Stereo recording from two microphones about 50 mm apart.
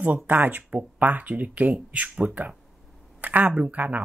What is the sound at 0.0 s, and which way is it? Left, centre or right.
Speech, right.